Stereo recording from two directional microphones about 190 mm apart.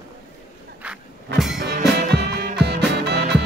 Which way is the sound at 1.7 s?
55° right (ahead or behind).